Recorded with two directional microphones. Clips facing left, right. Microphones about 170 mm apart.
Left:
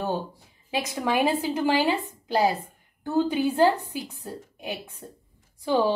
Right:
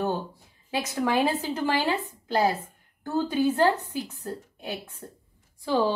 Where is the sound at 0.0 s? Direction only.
15° left (ahead or behind).